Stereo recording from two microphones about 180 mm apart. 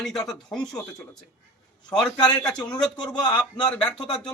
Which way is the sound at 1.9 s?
5° left (ahead or behind).